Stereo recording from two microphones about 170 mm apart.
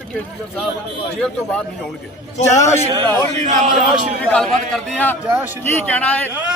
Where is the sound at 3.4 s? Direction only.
45° right (ahead or behind).